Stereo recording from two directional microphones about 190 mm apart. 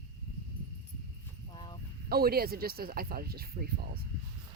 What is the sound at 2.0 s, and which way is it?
Speech, 55° right (ahead or behind).